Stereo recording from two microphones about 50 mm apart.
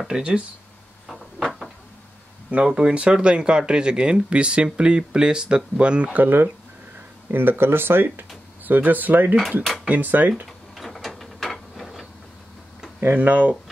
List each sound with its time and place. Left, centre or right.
0.1 s speech: centre
1.0 s a sound: centre
2.5 s speech: right
6.1 s speech: right
8.6 s speech: right
10.4 s mechanisms: centre
13.1 s speech: right